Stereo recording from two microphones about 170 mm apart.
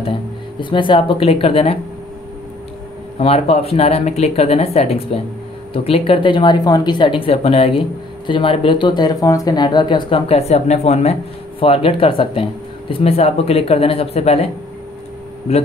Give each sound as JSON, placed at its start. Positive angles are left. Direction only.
{"t": 0.6, "sound": "speech", "side_deg": 30}
{"t": 3.2, "sound": "speech", "side_deg": 35}